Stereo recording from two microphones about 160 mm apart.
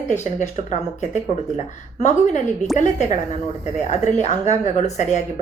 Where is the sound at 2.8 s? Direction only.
45° left (ahead or behind).